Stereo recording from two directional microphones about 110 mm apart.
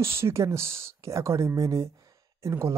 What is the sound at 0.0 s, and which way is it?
Speech, 25° right (ahead or behind).